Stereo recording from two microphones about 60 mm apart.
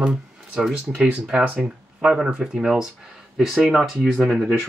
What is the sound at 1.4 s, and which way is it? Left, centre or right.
Speech, right.